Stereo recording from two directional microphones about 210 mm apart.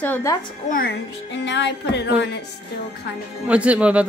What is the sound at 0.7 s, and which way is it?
Speech, 45° left (ahead or behind).